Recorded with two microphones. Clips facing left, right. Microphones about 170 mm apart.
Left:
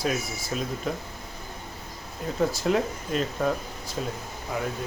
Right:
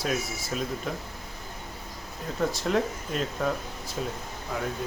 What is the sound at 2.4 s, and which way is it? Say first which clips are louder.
Speech: left 2 dB; 5° left (ahead or behind).